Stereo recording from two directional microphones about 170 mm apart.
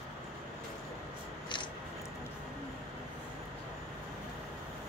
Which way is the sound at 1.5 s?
25° left (ahead or behind).